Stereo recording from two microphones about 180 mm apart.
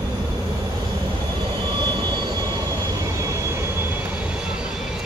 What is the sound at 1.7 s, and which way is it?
Vehicle, 25° right (ahead or behind).